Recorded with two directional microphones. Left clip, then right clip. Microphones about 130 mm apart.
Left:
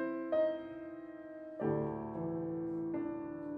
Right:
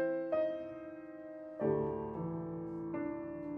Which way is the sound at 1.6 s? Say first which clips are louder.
Right 2 dB; 25° right (ahead or behind).